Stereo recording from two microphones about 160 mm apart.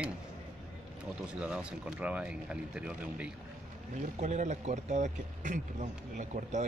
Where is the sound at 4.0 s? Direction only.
45° right (ahead or behind).